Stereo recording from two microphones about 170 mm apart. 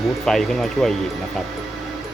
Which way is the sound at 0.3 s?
Centre (ahead or behind).